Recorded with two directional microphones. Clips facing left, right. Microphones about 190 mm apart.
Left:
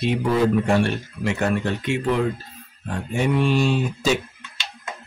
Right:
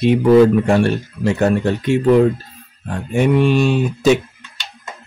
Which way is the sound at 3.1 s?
60° right (ahead or behind).